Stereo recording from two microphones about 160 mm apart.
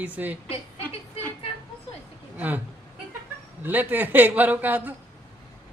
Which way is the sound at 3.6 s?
10° right (ahead or behind).